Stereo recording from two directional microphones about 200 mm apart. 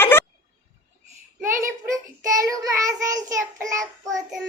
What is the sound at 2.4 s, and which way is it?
Speech, 15° right (ahead or behind).